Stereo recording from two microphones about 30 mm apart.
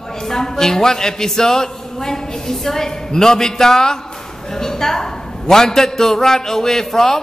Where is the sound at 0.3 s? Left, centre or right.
Centre.